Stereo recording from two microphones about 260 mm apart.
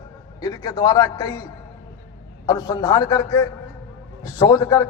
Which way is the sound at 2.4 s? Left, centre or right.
Centre.